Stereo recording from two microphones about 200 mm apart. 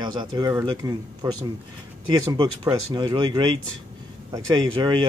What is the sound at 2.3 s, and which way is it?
Speech, 20° right (ahead or behind).